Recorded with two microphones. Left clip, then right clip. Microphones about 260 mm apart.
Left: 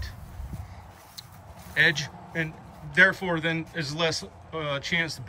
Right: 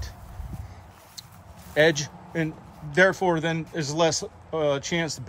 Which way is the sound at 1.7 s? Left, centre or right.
Centre.